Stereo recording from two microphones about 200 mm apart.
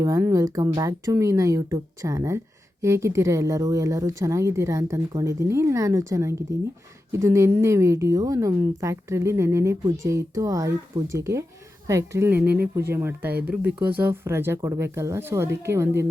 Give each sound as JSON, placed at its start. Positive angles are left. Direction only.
{"t": 0.0, "sound": "a woman's voice", "side_deg": -15}